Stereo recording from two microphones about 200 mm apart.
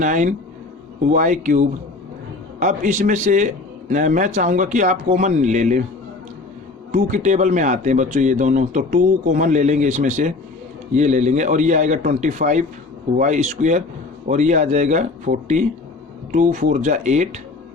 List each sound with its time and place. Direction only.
0.0 s speech: 40° right (ahead or behind)
6.9 s speech: 40° right (ahead or behind)